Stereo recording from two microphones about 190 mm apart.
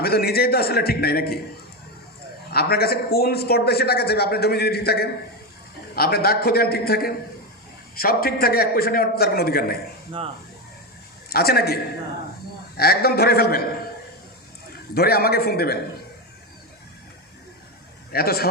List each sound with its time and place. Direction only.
0.0 s a man's voice: 55° left (ahead or behind)
2.5 s a man's voice: 55° left (ahead or behind)
11.3 s a man's voice: 55° left (ahead or behind)
14.9 s a man's voice: 55° left (ahead or behind)
18.1 s a man's voice: 55° left (ahead or behind)